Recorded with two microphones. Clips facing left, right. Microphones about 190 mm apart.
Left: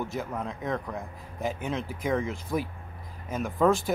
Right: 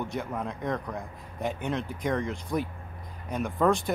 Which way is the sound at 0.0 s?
5° left (ahead or behind).